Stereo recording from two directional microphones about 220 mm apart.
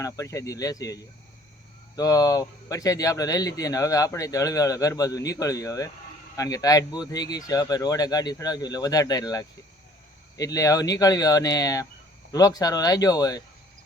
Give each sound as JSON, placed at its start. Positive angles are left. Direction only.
{"t": 0.0, "sound": "speech", "side_deg": 15}
{"t": 2.0, "sound": "speech", "side_deg": 15}